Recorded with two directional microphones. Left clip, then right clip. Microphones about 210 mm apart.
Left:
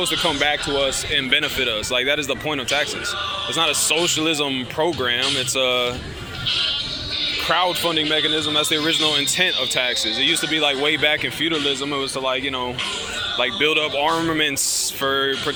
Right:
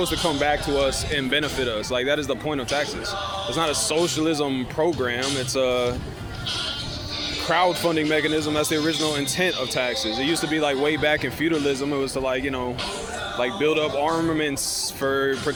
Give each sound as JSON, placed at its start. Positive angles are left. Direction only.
{"t": 0.3, "sound": "speech", "side_deg": -10}
{"t": 1.3, "sound": "speech", "side_deg": -5}
{"t": 7.4, "sound": "speech", "side_deg": -10}
{"t": 13.4, "sound": "speech", "side_deg": 0}